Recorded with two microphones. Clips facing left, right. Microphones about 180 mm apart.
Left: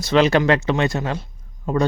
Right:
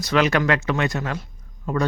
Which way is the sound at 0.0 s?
30° left (ahead or behind).